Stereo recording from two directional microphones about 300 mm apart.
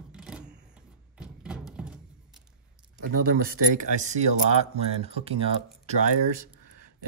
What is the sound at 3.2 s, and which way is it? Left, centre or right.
Speech, right.